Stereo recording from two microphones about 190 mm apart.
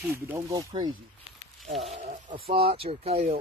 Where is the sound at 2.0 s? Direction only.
40° right (ahead or behind).